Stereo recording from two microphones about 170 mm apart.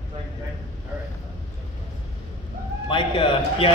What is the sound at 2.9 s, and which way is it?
Speech, 30° left (ahead or behind).